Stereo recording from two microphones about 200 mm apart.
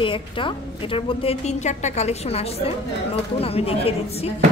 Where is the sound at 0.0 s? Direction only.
25° left (ahead or behind).